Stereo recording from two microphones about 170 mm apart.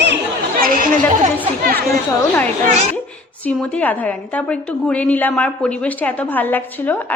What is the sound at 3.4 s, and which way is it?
A woman's voice, 10° left (ahead or behind).